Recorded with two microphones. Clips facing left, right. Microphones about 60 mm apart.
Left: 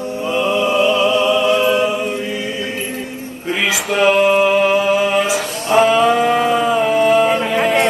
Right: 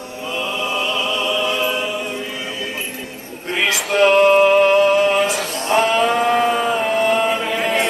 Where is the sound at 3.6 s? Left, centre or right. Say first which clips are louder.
Even; centre.